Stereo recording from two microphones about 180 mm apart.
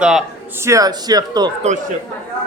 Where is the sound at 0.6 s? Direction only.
20° right (ahead or behind).